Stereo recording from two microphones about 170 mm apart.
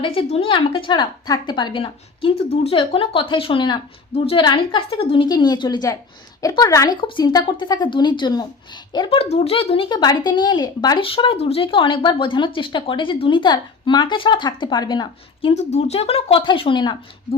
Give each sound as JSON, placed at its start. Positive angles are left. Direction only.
{"t": 0.0, "sound": "speech", "side_deg": 30}